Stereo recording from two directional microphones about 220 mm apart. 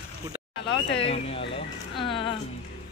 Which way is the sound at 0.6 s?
50° left (ahead or behind).